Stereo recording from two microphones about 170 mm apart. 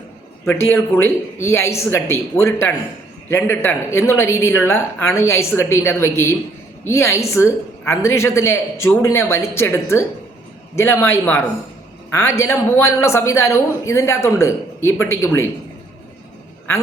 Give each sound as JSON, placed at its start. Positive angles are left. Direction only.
{"t": 0.4, "sound": "a man's voice", "side_deg": 15}